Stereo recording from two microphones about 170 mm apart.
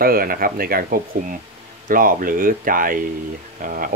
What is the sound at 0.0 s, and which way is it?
Speech, 60° right (ahead or behind).